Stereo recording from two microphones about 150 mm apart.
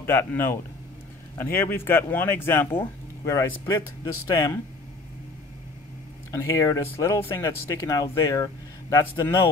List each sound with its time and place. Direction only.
0.0 s speech: 15° left (ahead or behind)
6.3 s speech: 20° left (ahead or behind)